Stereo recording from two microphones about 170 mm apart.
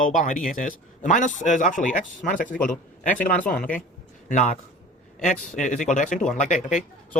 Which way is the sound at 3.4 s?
10° left (ahead or behind).